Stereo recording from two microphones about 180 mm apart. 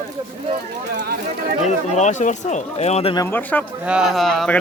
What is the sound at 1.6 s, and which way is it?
Speech, 40° left (ahead or behind).